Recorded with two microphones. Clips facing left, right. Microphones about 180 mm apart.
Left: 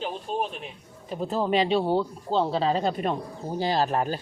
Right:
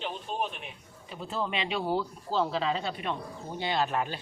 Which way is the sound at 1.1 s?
40° left (ahead or behind).